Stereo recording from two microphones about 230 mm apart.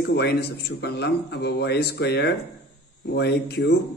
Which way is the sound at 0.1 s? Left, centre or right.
Left.